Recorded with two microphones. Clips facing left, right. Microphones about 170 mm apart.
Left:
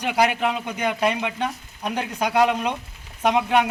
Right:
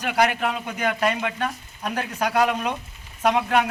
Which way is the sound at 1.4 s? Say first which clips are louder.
Left 1 dB; 15° left (ahead or behind).